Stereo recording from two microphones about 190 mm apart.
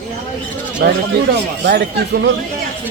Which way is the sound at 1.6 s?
60° right (ahead or behind).